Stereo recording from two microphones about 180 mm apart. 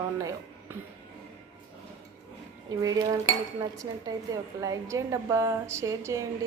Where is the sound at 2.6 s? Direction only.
20° right (ahead or behind).